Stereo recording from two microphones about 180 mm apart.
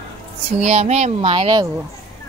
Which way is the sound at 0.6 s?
35° right (ahead or behind).